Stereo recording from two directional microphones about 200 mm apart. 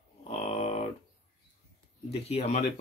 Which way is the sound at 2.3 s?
30° left (ahead or behind).